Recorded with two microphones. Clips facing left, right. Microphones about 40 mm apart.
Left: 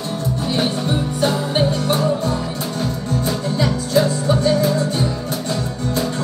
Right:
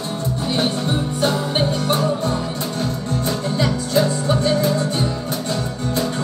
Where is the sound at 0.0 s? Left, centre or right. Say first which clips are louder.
Left 1 dB; centre.